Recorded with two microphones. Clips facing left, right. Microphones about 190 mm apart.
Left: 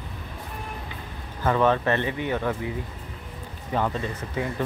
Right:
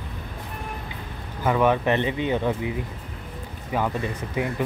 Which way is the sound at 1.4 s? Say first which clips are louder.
Right 1 dB; 10° right (ahead or behind).